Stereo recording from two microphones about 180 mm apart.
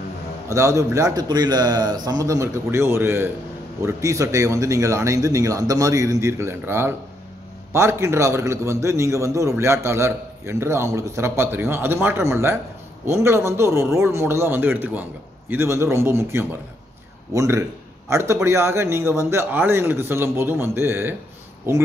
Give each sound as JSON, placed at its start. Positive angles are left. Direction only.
{"t": 0.5, "sound": "a man's voice", "side_deg": -15}